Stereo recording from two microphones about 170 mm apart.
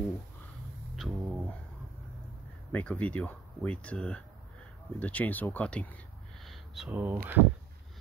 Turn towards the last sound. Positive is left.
turn(degrees=-10)  # may be behind; listen again after turning